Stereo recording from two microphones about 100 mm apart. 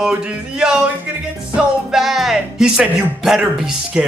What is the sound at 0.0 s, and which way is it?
Speech, 10° right (ahead or behind).